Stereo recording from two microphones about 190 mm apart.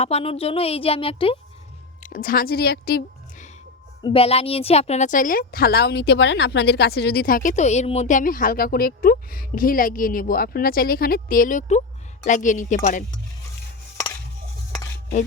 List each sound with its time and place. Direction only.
0.0 s speech: 30° left (ahead or behind)
2.0 s a woman's voice: 45° left (ahead or behind)
4.0 s a woman's voice: 30° left (ahead or behind)